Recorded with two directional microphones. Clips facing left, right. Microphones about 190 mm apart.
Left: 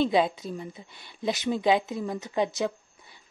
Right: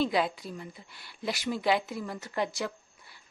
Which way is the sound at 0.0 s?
25° left (ahead or behind).